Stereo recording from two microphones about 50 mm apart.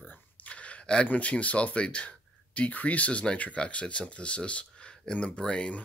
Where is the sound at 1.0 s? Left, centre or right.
Left.